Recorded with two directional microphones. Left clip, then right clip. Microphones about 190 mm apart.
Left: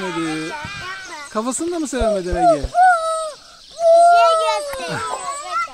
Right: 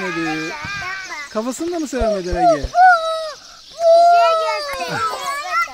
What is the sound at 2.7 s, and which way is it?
Dog, 35° left (ahead or behind).